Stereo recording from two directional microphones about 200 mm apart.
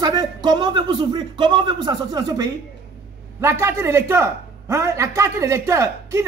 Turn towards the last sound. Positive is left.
turn(degrees=-15)  # may be behind; listen again after turning